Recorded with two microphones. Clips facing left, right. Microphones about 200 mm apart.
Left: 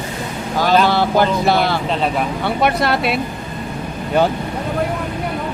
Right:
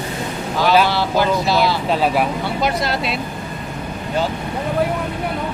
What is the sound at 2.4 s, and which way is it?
Speech, 60° left (ahead or behind).